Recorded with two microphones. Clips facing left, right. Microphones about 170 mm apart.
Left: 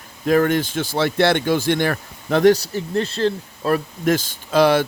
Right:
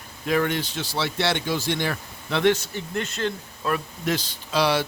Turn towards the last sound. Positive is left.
turn(degrees=50)  # may be behind; listen again after turning